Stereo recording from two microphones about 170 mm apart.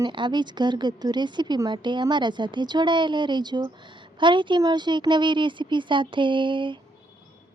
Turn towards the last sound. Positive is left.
turn(degrees=-30)  # may be behind; listen again after turning